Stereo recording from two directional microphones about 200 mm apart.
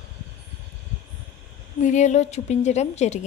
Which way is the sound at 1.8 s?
35° left (ahead or behind).